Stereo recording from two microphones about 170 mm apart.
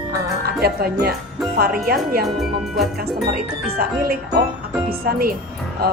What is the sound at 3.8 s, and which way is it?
Speech, 60° right (ahead or behind).